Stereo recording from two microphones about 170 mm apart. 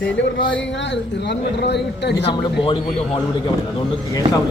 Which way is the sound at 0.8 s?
90° left.